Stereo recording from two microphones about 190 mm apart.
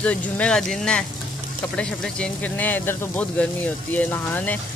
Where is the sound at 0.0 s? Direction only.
5° left (ahead or behind).